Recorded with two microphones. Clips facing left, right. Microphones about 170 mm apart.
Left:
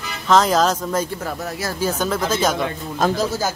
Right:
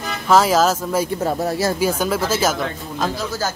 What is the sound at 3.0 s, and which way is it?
Speech, 50° left (ahead or behind).